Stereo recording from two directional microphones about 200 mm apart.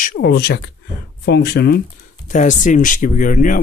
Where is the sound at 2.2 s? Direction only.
40° left (ahead or behind).